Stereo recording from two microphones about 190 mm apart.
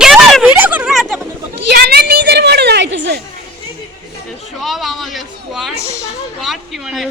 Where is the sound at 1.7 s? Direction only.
55° right (ahead or behind).